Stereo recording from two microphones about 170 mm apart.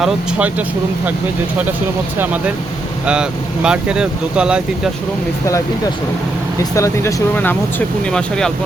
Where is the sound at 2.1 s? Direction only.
10° right (ahead or behind).